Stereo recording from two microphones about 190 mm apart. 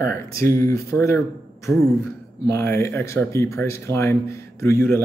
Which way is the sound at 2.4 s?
15° left (ahead or behind).